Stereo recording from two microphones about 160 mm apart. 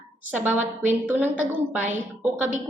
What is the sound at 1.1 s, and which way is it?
Speech, 10° right (ahead or behind).